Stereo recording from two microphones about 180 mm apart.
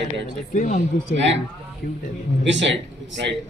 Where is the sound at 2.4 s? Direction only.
85° right.